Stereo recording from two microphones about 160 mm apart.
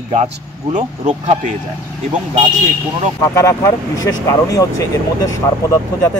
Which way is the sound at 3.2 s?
20° left (ahead or behind).